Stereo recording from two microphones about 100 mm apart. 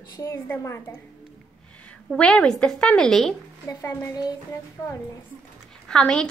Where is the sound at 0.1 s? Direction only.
30° left (ahead or behind).